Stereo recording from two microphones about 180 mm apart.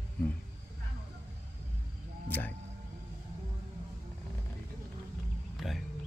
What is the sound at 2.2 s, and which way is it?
Speech, 10° left (ahead or behind).